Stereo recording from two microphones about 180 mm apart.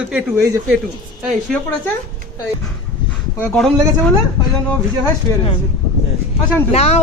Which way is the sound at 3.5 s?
Centre (ahead or behind).